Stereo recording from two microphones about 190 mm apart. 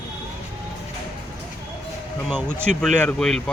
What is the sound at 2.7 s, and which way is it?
Speech, 40° right (ahead or behind).